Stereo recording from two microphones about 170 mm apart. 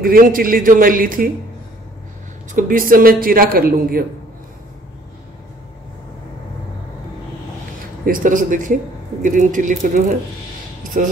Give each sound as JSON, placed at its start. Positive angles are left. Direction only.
{"t": 0.0, "sound": "a man's voice", "side_deg": -55}
{"t": 2.5, "sound": "a man's voice", "side_deg": -55}
{"t": 8.0, "sound": "speech", "side_deg": -55}
{"t": 10.8, "sound": "a sound", "side_deg": -50}